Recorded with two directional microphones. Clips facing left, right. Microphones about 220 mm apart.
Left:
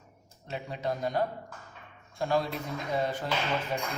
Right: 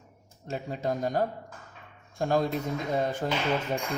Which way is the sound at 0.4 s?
45° right (ahead or behind).